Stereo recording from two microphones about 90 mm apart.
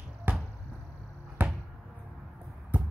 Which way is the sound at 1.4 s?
20° right (ahead or behind).